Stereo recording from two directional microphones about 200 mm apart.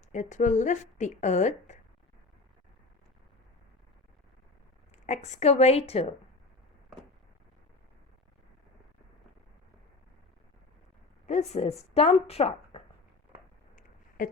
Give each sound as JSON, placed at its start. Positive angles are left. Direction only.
{"t": 0.1, "sound": "a woman's voice", "side_deg": 35}
{"t": 5.0, "sound": "a woman's voice", "side_deg": 35}
{"t": 11.3, "sound": "a woman's voice", "side_deg": 35}
{"t": 14.2, "sound": "a sound", "side_deg": 45}